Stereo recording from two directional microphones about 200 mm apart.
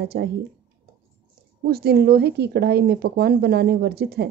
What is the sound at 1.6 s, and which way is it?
A woman's voice, 50° right (ahead or behind).